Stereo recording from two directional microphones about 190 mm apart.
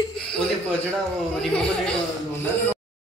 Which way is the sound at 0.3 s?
5° left (ahead or behind).